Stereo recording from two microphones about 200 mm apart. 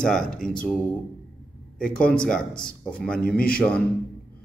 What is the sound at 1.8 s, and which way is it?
A man's voice, 5° left (ahead or behind).